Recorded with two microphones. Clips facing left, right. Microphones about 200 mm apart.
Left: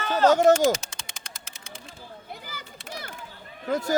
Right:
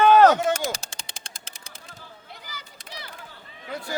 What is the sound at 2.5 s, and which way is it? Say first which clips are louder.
Children playing: left 3 dB; 50° left (ahead or behind).